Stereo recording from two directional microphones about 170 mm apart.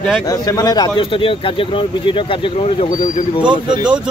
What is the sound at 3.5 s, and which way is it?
Speech, 25° right (ahead or behind).